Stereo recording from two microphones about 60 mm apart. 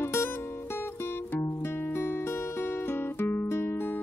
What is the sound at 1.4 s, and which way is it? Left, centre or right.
Music, left.